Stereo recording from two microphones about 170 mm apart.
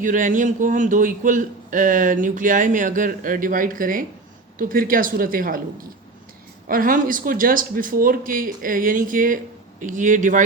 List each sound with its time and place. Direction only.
0.0 s a man's voice: 50° right (ahead or behind)
6.7 s a man's voice: 55° right (ahead or behind)